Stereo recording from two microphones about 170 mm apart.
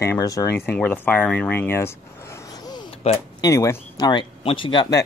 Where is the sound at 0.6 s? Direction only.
10° left (ahead or behind).